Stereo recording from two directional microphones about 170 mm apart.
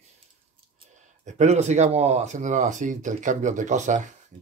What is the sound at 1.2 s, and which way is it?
Speech, 40° right (ahead or behind).